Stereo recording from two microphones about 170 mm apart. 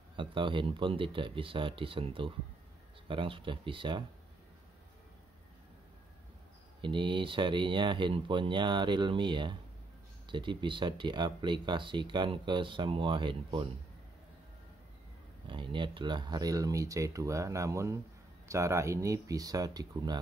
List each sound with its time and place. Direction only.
0.1 s speech: 30° right (ahead or behind)
6.8 s speech: 30° right (ahead or behind)
15.4 s speech: 30° right (ahead or behind)